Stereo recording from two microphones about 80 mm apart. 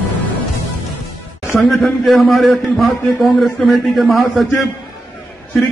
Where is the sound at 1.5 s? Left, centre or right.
Centre.